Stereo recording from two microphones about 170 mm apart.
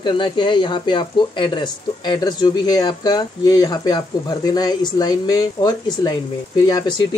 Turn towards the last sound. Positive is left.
turn(degrees=25)  # may be behind; listen again after turning